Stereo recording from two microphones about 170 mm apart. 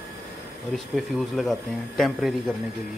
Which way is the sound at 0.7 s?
Centre (ahead or behind).